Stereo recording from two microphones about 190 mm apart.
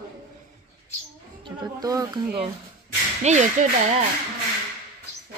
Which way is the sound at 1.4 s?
20° right (ahead or behind).